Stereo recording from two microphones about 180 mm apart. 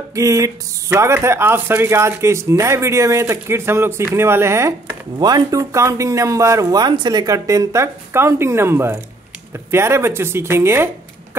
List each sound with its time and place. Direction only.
0.1 s speech: 15° right (ahead or behind)